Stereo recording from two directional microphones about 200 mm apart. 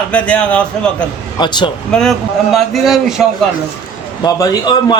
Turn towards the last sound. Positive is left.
turn(degrees=20)  # may be behind; listen again after turning